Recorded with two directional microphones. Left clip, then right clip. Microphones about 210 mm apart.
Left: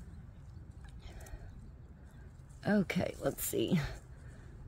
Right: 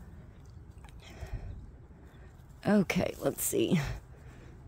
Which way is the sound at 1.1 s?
20° right (ahead or behind).